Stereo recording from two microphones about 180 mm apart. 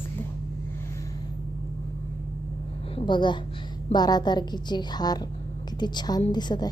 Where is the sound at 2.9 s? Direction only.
25° left (ahead or behind).